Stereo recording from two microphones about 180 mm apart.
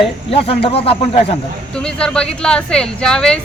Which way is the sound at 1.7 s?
5° left (ahead or behind).